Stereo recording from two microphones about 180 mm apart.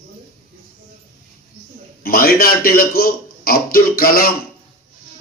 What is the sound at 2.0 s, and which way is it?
A man's voice, 55° left (ahead or behind).